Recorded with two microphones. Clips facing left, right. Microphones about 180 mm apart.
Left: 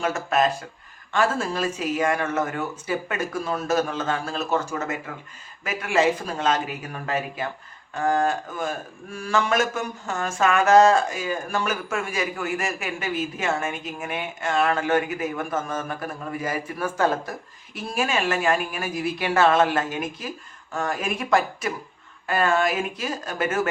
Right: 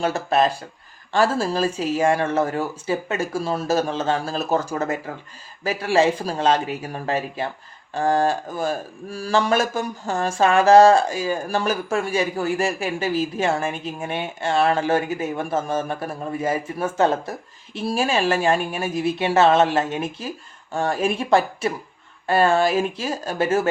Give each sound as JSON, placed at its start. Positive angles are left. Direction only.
{"t": 0.0, "sound": "speech", "side_deg": -30}